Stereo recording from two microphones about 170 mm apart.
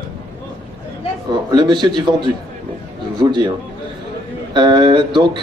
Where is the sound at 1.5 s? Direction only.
25° right (ahead or behind).